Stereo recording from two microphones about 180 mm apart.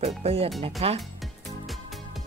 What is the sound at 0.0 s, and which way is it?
Music, 35° right (ahead or behind).